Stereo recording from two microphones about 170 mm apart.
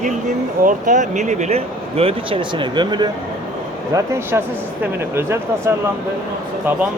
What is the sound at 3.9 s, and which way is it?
Speech, 15° right (ahead or behind).